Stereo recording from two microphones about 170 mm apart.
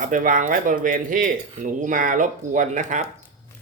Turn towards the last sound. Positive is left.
turn(degrees=-45)  # may be behind; listen again after turning